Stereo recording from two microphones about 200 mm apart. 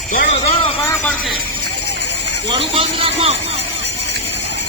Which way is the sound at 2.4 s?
25° right (ahead or behind).